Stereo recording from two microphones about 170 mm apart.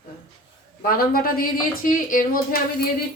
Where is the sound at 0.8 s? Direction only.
60° left (ahead or behind).